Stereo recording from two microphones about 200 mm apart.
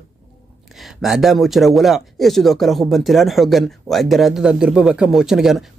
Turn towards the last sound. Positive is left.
turn(degrees=0)  # may be behind; listen again after turning